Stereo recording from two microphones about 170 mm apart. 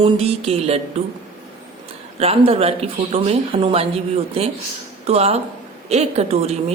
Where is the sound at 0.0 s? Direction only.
35° right (ahead or behind).